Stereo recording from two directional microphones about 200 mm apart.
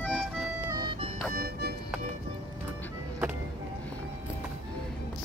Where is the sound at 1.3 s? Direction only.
50° right (ahead or behind).